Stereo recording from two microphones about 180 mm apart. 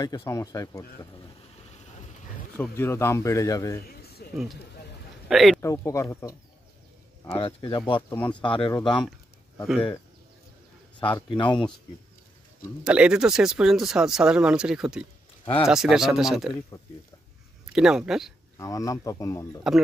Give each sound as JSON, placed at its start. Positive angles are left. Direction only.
{"t": 0.0, "sound": "speech", "side_deg": 20}
{"t": 2.5, "sound": "speech", "side_deg": 10}
{"t": 3.8, "sound": "a sound", "side_deg": 60}
{"t": 5.3, "sound": "speech", "side_deg": 0}
{"t": 5.6, "sound": "speech", "side_deg": 15}
{"t": 7.2, "sound": "speech", "side_deg": 30}
{"t": 11.0, "sound": "speech", "side_deg": 25}
{"t": 12.8, "sound": "speech", "side_deg": -5}
{"t": 17.7, "sound": "speech", "side_deg": -5}
{"t": 18.6, "sound": "speech", "side_deg": 20}